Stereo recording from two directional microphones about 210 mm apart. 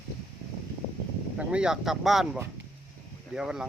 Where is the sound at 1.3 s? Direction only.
5° right (ahead or behind).